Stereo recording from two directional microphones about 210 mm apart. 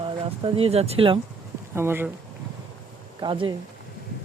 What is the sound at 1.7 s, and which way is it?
Speech, 10° right (ahead or behind).